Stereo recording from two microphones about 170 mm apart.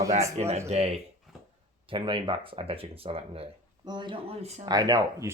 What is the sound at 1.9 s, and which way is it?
Speech, 30° right (ahead or behind).